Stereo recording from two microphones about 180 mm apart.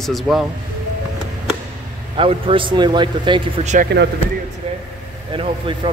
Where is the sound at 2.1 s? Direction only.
30° right (ahead or behind).